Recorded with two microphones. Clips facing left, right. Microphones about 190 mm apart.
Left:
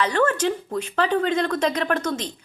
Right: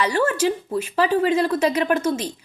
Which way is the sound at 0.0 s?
10° right (ahead or behind).